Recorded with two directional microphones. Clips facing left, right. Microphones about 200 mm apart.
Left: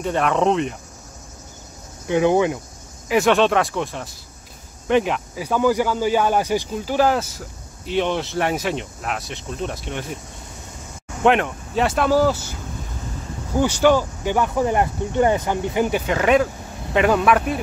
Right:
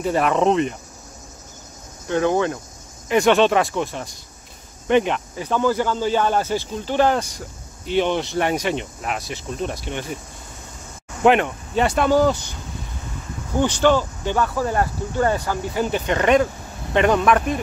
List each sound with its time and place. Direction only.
0.0 s speech: 5° right (ahead or behind)
2.0 s speech: 15° left (ahead or behind)
3.1 s speech: centre (ahead or behind)
11.2 s speech: centre (ahead or behind)
13.6 s speech: 10° left (ahead or behind)
16.1 s speech: 5° left (ahead or behind)